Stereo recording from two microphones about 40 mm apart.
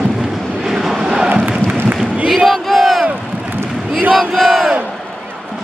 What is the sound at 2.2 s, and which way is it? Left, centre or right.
Crowd, centre.